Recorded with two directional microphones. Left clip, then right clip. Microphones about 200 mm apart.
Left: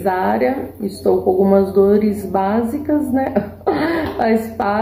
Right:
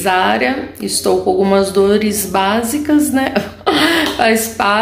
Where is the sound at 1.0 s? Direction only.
25° right (ahead or behind).